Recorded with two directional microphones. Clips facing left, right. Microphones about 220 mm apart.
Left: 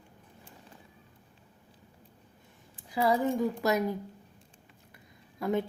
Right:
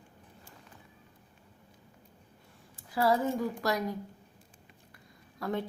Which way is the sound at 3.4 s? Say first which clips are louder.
Left 4 dB; 20° left (ahead or behind).